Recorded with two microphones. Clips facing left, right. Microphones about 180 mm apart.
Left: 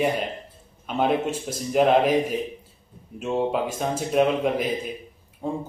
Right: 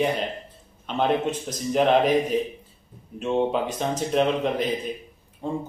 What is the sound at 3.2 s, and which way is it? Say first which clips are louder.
A man's voice: right 1 dB; 5° left (ahead or behind).